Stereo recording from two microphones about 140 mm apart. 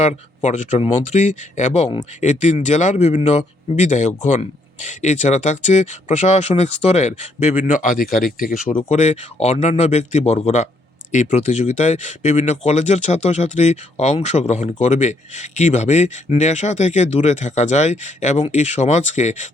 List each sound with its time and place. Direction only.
0.0 s speech: 55° left (ahead or behind); by 8.5 s 90° left
8.7 s speech: 50° left (ahead or behind)